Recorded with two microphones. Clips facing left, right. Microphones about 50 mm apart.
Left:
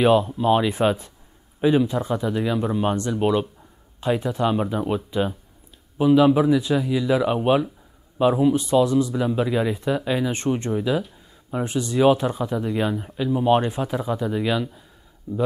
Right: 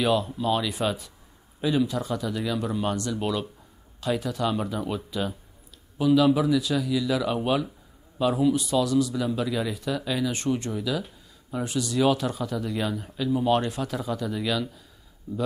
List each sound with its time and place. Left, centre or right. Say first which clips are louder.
0.0 s speech: left 6 dB; left